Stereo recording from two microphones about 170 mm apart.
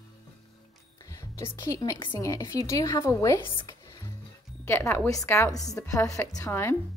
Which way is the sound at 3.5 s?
25° left (ahead or behind).